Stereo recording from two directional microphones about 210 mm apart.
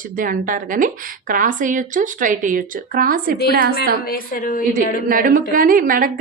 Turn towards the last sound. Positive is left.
turn(degrees=-40)  # may be behind; listen again after turning